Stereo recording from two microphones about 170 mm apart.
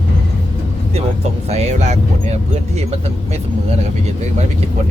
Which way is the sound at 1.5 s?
40° right (ahead or behind).